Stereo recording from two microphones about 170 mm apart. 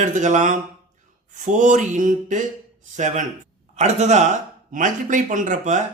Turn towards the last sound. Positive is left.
turn(degrees=-45)  # may be behind; listen again after turning